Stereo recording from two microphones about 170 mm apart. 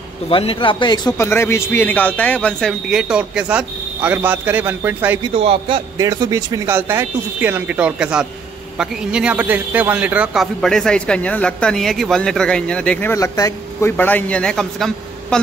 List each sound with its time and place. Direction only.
0.3 s a man's voice: 30° left (ahead or behind); by 5.2 s 10° right (ahead or behind)
5.2 s speech: 35° right (ahead or behind)
5.9 s a man's voice: 20° right (ahead or behind); by 15.4 s 5° left (ahead or behind)